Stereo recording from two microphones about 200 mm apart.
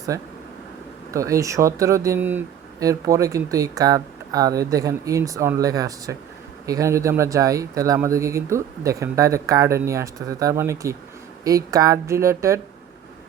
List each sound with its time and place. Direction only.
0.1 s speech: 15° right (ahead or behind)